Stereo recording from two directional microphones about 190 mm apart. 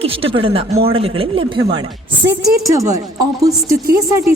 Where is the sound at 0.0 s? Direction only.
30° right (ahead or behind).